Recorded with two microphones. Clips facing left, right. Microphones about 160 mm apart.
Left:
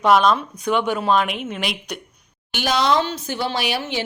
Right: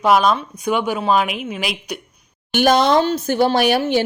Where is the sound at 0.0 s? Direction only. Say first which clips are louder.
Right 1 dB; 5° right (ahead or behind).